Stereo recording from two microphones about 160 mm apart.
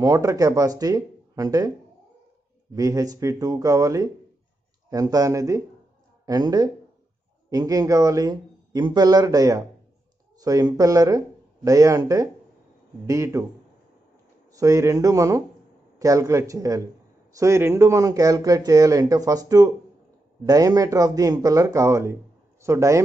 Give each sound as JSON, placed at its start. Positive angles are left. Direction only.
{"t": 0.0, "sound": "a man's voice", "side_deg": -20}
{"t": 2.7, "sound": "a man's voice", "side_deg": -20}
{"t": 14.5, "sound": "a man's voice", "side_deg": -20}